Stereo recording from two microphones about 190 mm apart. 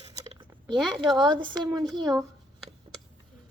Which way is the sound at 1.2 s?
25° right (ahead or behind).